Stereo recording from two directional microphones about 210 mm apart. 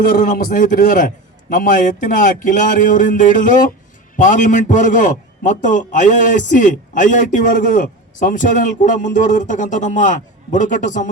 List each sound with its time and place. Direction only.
0.0 s speech: 40° left (ahead or behind)